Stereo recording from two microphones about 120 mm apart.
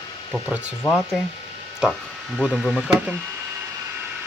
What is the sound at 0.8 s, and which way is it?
Speech, 20° left (ahead or behind).